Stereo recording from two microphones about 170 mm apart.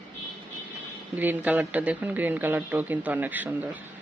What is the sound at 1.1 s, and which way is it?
Speech, 10° right (ahead or behind).